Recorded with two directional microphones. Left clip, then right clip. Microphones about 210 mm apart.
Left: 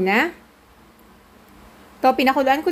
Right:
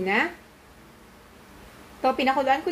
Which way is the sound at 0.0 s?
50° left (ahead or behind).